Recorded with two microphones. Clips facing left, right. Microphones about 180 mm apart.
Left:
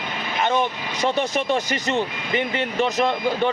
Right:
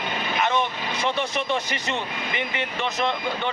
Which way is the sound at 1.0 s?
45° left (ahead or behind).